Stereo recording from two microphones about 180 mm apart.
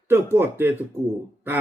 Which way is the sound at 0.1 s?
10° right (ahead or behind).